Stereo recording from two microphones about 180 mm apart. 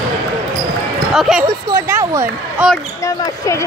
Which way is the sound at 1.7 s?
15° right (ahead or behind).